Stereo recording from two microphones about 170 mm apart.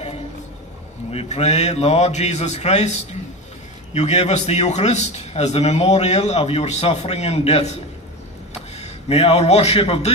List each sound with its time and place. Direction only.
1.1 s a man's voice: 40° left (ahead or behind)
8.8 s a man's voice: 40° left (ahead or behind)